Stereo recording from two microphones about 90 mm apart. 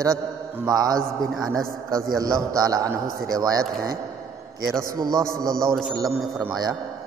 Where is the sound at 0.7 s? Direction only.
40° right (ahead or behind).